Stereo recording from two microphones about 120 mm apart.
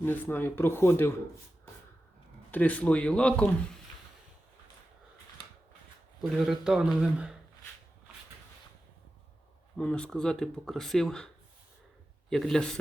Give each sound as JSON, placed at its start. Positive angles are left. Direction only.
{"t": 0.0, "sound": "speech", "side_deg": 15}
{"t": 2.5, "sound": "speech", "side_deg": 10}
{"t": 6.2, "sound": "speech", "side_deg": 0}
{"t": 9.7, "sound": "speech", "side_deg": 10}
{"t": 12.3, "sound": "speech", "side_deg": 5}